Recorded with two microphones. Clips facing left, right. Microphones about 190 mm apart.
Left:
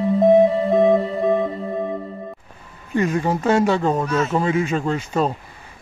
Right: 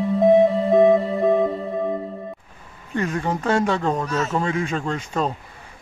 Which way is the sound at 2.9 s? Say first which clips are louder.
Left 4 dB; 10° left (ahead or behind).